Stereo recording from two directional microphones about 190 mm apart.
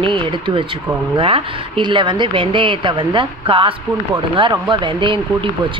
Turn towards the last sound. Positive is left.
turn(degrees=-25)  # may be behind; listen again after turning